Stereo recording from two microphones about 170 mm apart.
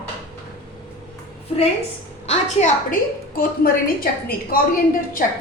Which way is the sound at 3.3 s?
60° left (ahead or behind).